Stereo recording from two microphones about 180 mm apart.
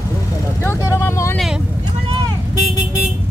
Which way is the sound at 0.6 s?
15° left (ahead or behind).